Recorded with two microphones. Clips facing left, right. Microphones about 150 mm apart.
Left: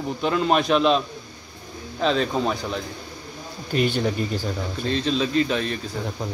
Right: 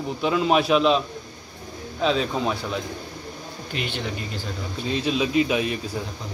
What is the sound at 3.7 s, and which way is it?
Speech, 45° left (ahead or behind).